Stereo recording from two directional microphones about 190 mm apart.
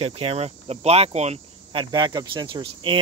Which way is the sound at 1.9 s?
25° right (ahead or behind).